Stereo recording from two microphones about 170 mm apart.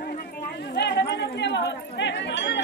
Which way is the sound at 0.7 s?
80° left.